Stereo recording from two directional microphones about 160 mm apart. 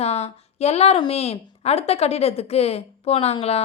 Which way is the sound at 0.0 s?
40° left (ahead or behind).